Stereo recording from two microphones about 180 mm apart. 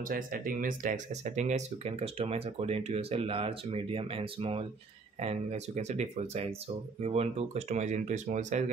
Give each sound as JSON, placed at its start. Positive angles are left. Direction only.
{"t": 0.1, "sound": "speech", "side_deg": -50}